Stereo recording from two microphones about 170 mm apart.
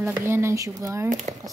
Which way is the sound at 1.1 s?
45° right (ahead or behind).